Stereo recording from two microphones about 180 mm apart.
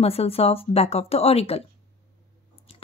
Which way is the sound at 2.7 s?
30° left (ahead or behind).